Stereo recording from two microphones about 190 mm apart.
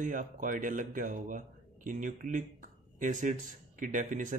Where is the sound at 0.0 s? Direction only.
45° right (ahead or behind).